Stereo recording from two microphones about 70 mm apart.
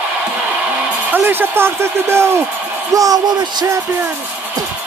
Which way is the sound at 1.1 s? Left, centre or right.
Right.